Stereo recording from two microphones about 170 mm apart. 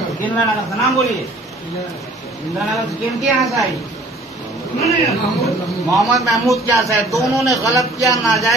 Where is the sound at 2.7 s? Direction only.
Centre (ahead or behind).